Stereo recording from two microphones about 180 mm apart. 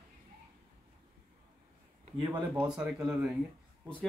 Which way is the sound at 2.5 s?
5° right (ahead or behind).